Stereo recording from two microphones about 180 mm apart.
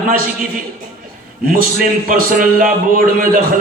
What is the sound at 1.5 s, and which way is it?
A man's voice, 50° right (ahead or behind).